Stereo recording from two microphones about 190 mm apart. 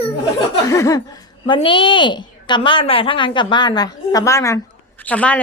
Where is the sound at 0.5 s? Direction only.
15° left (ahead or behind).